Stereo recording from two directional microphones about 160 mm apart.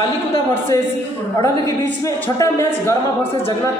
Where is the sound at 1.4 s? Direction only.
20° left (ahead or behind).